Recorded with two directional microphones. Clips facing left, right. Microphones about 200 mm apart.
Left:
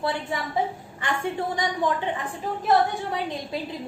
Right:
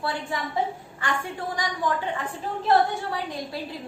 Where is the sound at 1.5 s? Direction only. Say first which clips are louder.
Left 3 dB; 25° left (ahead or behind).